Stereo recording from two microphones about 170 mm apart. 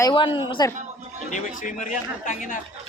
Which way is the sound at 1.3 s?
45° left (ahead or behind).